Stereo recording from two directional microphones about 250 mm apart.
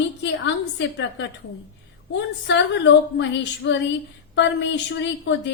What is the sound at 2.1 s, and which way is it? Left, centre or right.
Speech, left.